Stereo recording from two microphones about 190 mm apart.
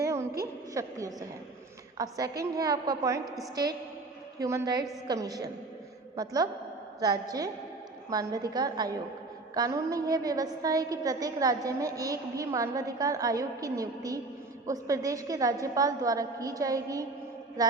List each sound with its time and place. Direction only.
0.0 s a sound: 15° right (ahead or behind)
0.7 s a woman's voice: 15° right (ahead or behind)
3.2 s a woman's voice: centre (ahead or behind)
3.5 s a woman's voice: 20° right (ahead or behind)